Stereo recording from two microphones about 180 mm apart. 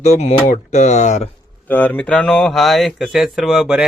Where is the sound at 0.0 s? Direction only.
40° left (ahead or behind).